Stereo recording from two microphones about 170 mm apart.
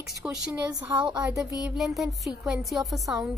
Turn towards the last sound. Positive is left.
turn(degrees=0)  # may be behind; listen again after turning